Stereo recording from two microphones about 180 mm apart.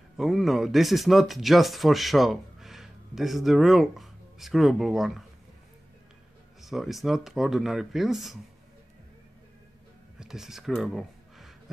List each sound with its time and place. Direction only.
0.2 s speech: centre (ahead or behind)
6.6 s speech: centre (ahead or behind)
10.1 s speech: 5° right (ahead or behind)